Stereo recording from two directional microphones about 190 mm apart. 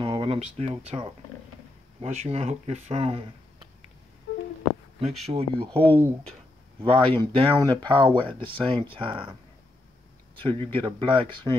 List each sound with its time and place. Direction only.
0.0 s speech: 25° right (ahead or behind)
5.2 s speech: 30° right (ahead or behind)
10.3 s speech: 25° right (ahead or behind)